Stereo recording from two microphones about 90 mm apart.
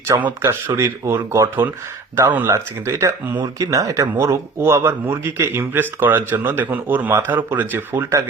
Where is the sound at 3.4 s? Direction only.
45° right (ahead or behind).